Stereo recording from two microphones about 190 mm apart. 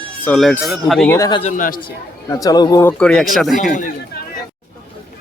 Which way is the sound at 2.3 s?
15° left (ahead or behind).